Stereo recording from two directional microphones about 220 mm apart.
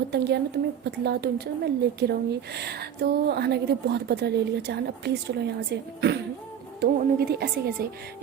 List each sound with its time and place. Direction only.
0.1 s speech: 50° right (ahead or behind)